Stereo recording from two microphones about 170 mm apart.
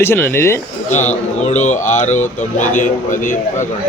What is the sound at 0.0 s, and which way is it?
Speech, 15° left (ahead or behind).